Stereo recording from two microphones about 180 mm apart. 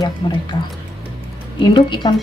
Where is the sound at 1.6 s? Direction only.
25° left (ahead or behind).